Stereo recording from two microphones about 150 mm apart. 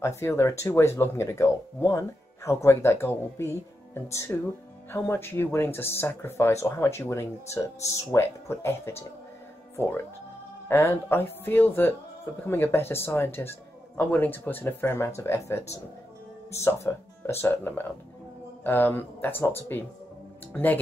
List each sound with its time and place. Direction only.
0.0 s speech: 15° left (ahead or behind)
10.7 s speech: 15° left (ahead or behind)